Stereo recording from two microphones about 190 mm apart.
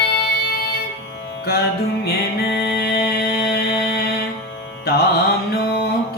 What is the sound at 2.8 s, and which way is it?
Music, 55° left (ahead or behind).